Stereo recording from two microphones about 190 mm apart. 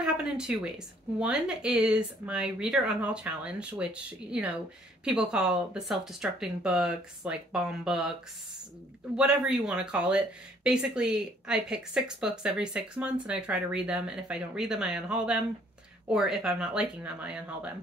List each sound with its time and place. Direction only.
0.0 s speech: 5° right (ahead or behind)
9.1 s speech: 5° right (ahead or behind)